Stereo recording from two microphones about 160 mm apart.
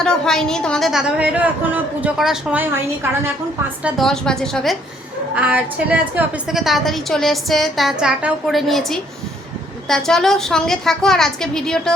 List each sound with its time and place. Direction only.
0.0 s a woman's voice: 5° left (ahead or behind)
3.8 s a woman's voice: centre (ahead or behind)
5.3 s a woman's voice: 10° right (ahead or behind)